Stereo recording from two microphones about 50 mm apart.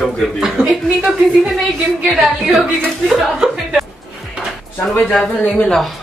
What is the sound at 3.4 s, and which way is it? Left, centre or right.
Speech, centre.